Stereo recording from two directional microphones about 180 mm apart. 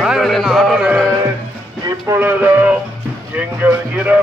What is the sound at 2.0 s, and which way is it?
Music, 10° right (ahead or behind).